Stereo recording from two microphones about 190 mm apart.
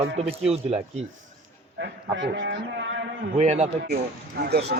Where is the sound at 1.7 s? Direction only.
70° right (ahead or behind).